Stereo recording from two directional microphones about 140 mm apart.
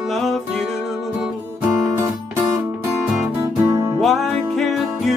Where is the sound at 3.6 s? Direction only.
20° right (ahead or behind).